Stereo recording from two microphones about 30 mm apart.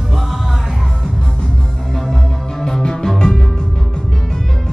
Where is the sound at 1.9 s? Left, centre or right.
Centre.